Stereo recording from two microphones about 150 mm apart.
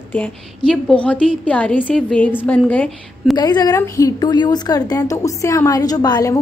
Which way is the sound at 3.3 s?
25° left (ahead or behind).